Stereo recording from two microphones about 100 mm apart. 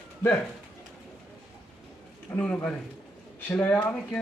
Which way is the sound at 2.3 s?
10° left (ahead or behind).